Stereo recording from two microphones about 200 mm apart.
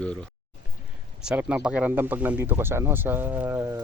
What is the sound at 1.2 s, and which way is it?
Speech, 5° right (ahead or behind).